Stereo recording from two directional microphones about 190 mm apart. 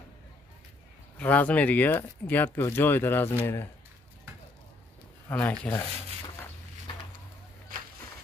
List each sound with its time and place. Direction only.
1.1 s speech: 10° left (ahead or behind)
5.3 s speech: 5° left (ahead or behind)